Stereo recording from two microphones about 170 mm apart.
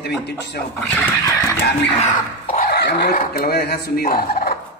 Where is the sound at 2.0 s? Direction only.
45° left (ahead or behind).